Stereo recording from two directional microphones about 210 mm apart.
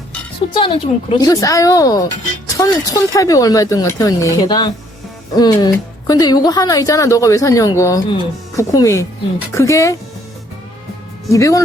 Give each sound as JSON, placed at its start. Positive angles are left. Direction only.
{"t": 0.5, "sound": "a woman's voice", "side_deg": 25}
{"t": 11.3, "sound": "a woman's voice", "side_deg": 15}